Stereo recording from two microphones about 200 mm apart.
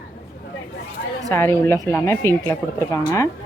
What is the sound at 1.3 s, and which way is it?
Speech, 15° left (ahead or behind).